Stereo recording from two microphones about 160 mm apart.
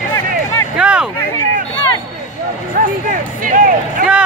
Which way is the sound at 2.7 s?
55° right (ahead or behind).